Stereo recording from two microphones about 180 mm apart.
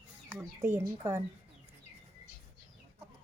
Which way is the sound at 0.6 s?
15° right (ahead or behind).